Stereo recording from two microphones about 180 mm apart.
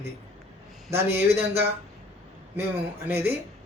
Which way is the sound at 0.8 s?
15° right (ahead or behind).